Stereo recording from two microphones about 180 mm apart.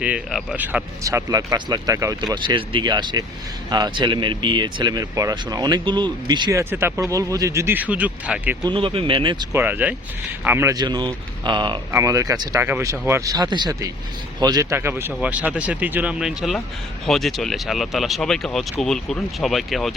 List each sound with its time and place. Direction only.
0.0 s speech: 5° right (ahead or behind)
8.6 s speech: 30° right (ahead or behind)
9.6 s speech: 10° right (ahead or behind)